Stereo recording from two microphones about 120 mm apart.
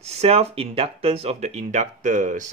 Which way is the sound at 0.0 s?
60° right (ahead or behind).